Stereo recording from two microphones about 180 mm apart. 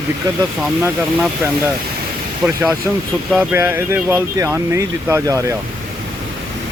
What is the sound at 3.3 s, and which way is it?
Speech, 5° right (ahead or behind).